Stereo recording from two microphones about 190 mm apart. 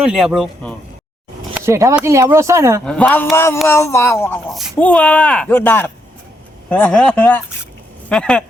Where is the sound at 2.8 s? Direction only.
5° left (ahead or behind).